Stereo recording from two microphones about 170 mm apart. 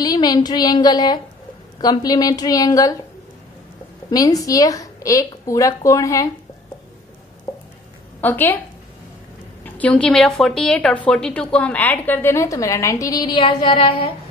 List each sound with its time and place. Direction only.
0.0 s a woman's voice: 25° left (ahead or behind)
4.1 s a woman's voice: 20° left (ahead or behind)
8.2 s a woman's voice: 10° left (ahead or behind)
9.6 s a woman's voice: 10° left (ahead or behind); by 14.1 s 30° left (ahead or behind)